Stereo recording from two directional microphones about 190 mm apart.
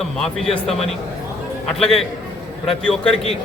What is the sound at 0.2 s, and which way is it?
A man's voice, 5° left (ahead or behind).